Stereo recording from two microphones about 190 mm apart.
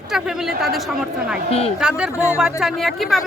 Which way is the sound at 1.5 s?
30° left (ahead or behind).